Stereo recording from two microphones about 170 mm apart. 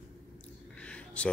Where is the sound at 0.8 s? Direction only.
5° left (ahead or behind).